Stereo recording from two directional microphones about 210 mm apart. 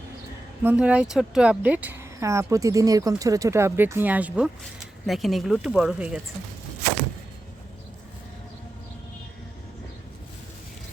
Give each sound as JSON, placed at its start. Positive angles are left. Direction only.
{"t": 0.6, "sound": "speech", "side_deg": -5}